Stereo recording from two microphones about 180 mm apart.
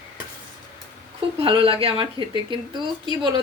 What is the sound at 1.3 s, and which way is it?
Speech, 30° right (ahead or behind).